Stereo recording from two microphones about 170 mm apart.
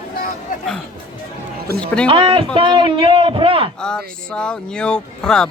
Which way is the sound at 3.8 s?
5° left (ahead or behind).